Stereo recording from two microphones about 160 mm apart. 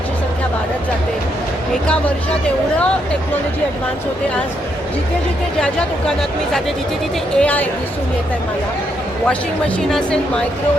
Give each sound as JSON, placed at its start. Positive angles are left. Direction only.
{"t": 2.7, "sound": "speech", "side_deg": 5}
{"t": 7.3, "sound": "speech", "side_deg": 10}
{"t": 9.9, "sound": "a woman's voice", "side_deg": 5}